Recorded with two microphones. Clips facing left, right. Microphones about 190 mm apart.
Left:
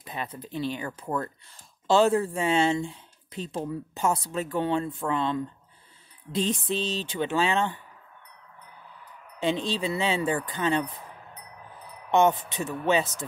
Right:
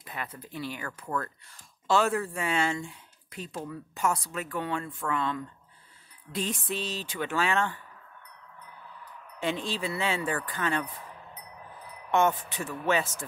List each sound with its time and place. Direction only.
0.0 s speech: 25° left (ahead or behind)
9.4 s speech: 20° left (ahead or behind)
12.1 s speech: 20° left (ahead or behind)